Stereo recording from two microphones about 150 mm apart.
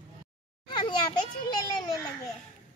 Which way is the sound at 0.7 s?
30° left (ahead or behind).